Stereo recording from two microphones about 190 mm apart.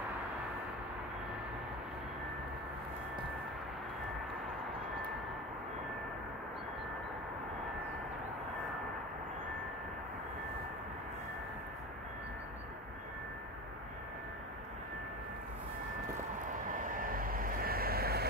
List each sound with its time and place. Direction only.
16.6 s vehicle: 45° right (ahead or behind)